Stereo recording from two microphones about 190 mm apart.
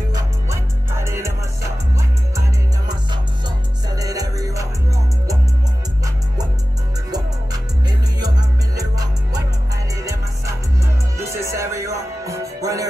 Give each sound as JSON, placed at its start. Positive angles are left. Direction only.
{"t": 0.1, "sound": "music", "side_deg": -15}
{"t": 8.2, "sound": "music", "side_deg": -20}
{"t": 11.1, "sound": "music", "side_deg": -15}